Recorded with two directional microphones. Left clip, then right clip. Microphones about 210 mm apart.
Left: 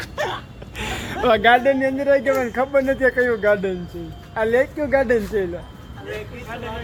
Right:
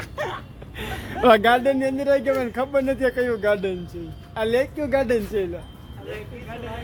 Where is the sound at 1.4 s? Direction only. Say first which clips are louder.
Left 4 dB; 25° right (ahead or behind).